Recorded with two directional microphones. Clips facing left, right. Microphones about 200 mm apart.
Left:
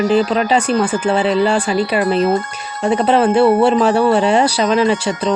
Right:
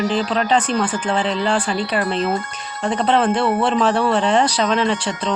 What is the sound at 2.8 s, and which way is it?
Speech, 5° left (ahead or behind).